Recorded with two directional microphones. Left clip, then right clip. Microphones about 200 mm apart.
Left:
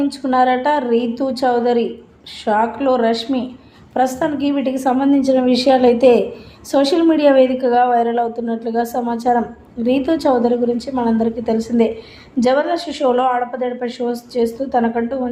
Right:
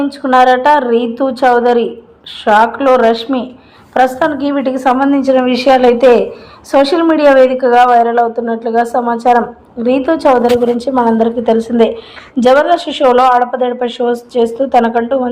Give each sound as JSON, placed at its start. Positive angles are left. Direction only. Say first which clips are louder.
{"t": 0.2, "sound": "a woman's voice", "louder": "right 8 dB", "side_deg": -10}